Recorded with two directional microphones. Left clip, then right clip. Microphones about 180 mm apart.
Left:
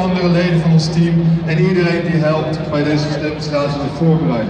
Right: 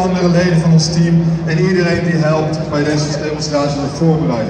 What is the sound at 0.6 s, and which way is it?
Speech, 90° left.